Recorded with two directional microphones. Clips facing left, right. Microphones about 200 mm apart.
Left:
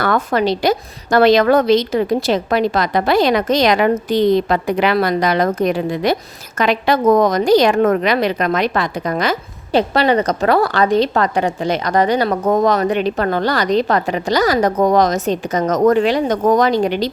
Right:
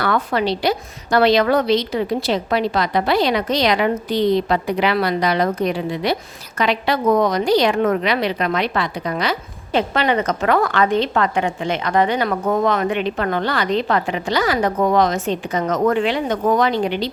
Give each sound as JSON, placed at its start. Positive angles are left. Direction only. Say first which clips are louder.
{"t": 0.0, "sound": "a woman's voice", "louder": "left 3 dB", "side_deg": 45}